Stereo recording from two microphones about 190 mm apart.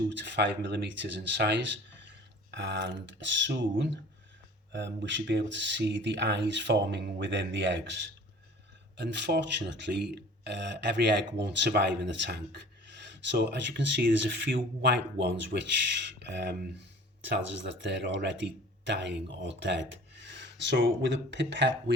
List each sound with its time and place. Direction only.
0.1 s speech: 70° right (ahead or behind)